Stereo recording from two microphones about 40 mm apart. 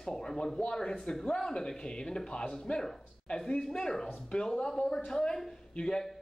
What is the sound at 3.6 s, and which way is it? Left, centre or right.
Speech, centre.